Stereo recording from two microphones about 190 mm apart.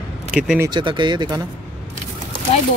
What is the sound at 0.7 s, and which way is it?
Speech, 25° right (ahead or behind).